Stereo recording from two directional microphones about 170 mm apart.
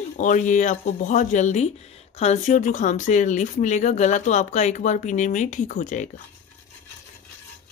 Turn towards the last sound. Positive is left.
turn(degrees=45)  # may be behind; listen again after turning